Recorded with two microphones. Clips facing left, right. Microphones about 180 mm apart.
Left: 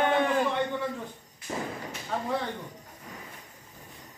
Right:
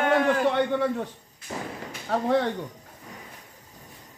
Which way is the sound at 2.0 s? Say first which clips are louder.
Right 8 dB; 70° right (ahead or behind).